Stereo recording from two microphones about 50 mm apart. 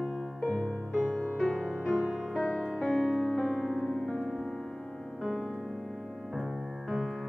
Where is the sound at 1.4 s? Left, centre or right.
Centre.